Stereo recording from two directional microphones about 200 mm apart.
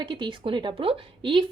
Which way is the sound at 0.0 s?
25° right (ahead or behind).